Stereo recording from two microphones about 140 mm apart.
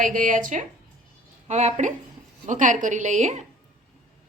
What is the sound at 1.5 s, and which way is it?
A woman's voice, 55° right (ahead or behind).